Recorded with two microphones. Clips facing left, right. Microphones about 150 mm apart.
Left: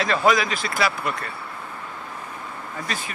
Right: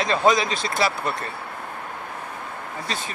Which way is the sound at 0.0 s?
25° right (ahead or behind).